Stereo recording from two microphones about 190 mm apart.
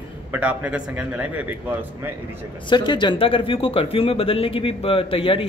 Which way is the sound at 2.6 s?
25° left (ahead or behind).